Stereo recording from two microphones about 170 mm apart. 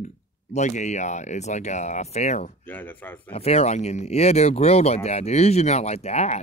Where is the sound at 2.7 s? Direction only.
10° left (ahead or behind).